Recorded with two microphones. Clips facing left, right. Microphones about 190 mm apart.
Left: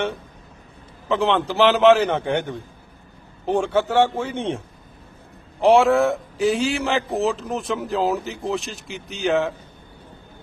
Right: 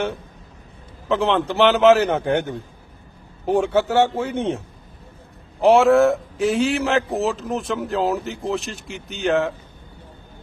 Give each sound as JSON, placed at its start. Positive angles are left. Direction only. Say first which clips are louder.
{"t": 1.0, "sound": "a man's voice", "louder": "right 1 dB", "side_deg": 0}